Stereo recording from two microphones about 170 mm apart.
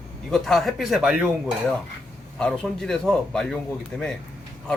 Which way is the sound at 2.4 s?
5° left (ahead or behind).